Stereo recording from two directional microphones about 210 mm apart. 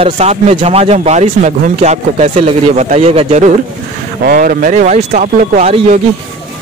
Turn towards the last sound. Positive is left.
turn(degrees=-35)  # may be behind; listen again after turning